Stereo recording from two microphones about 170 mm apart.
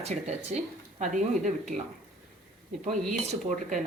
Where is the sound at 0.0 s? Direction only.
40° right (ahead or behind).